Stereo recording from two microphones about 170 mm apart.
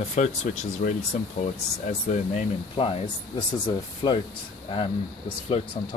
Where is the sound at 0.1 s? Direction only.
45° left (ahead or behind).